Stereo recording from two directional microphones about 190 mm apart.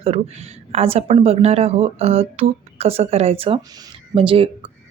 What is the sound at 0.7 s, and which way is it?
Speech, 35° right (ahead or behind).